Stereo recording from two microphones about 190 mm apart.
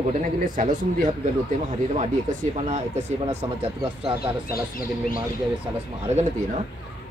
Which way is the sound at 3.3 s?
30° right (ahead or behind).